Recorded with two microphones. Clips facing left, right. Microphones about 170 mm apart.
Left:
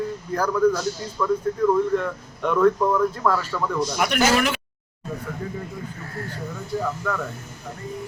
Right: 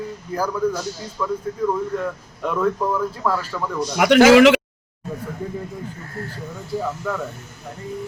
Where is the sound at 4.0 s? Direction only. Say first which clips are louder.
Right 11 dB; 90° right.